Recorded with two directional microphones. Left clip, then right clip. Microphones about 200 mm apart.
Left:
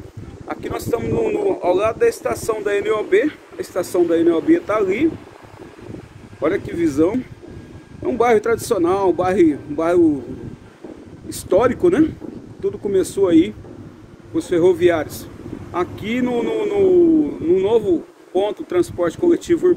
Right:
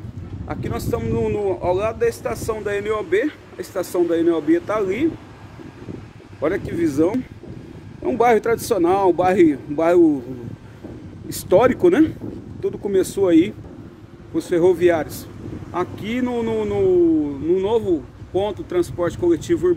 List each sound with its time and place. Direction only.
0.5 s speech: 5° left (ahead or behind); by 5.1 s 10° right (ahead or behind)
6.4 s a man's voice: 20° right (ahead or behind); by 10.1 s 40° right (ahead or behind)
11.2 s a man's voice: 40° right (ahead or behind); by 15.2 s 20° right (ahead or behind)
15.7 s speech: 10° right (ahead or behind)